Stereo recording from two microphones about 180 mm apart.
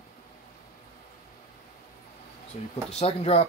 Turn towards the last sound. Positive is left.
turn(degrees=35)  # may be behind; listen again after turning